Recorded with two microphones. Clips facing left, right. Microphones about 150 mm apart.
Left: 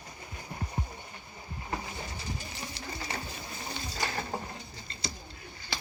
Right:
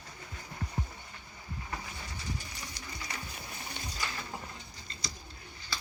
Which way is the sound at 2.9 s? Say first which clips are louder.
Left 5 dB; 30° left (ahead or behind).